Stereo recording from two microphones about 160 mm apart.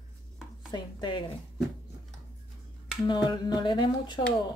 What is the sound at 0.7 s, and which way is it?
Speech, 30° left (ahead or behind).